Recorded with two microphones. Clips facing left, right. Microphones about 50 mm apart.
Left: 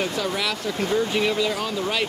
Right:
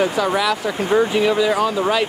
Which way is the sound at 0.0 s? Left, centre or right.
Centre.